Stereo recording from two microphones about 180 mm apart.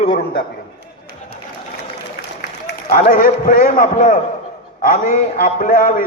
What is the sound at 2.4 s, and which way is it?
A man's voice, 55° left (ahead or behind).